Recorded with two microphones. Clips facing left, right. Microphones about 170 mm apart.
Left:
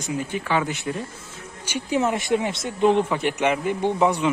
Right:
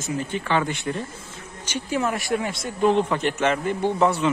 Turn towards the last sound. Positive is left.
turn(degrees=15)  # may be behind; listen again after turning